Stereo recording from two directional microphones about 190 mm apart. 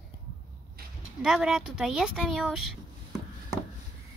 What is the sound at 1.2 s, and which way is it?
Speech, centre (ahead or behind).